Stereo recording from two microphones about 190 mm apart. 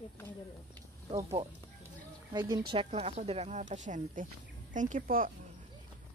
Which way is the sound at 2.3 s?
20° right (ahead or behind).